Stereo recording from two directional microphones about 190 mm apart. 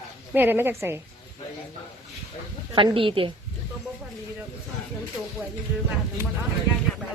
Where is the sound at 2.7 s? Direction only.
25° right (ahead or behind).